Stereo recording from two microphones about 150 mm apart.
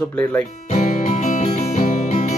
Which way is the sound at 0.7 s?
50° left (ahead or behind).